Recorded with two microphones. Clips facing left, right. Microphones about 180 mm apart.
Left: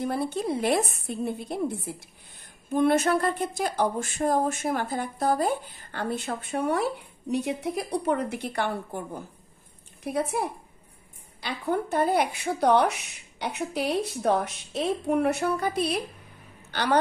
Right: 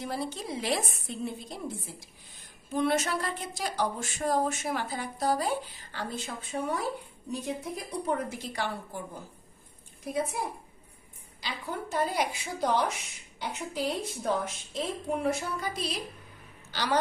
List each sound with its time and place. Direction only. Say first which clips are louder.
0.0 s a woman's voice: left 7 dB; 55° left (ahead or behind)